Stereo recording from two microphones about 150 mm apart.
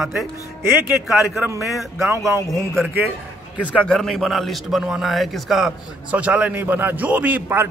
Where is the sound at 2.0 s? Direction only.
20° right (ahead or behind).